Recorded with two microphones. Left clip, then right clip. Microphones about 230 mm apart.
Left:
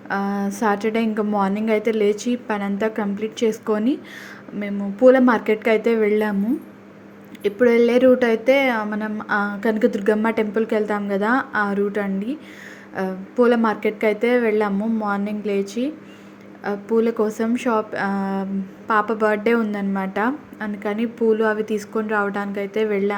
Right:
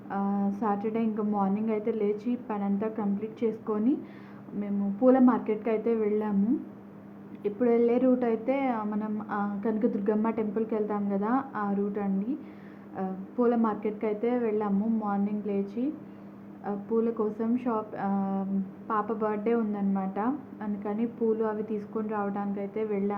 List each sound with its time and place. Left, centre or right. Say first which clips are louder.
0.1 s speech: left 7 dB; left
7.4 s speech: left 9 dB; centre